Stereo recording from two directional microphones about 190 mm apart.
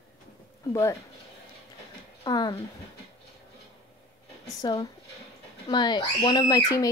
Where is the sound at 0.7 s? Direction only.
15° left (ahead or behind).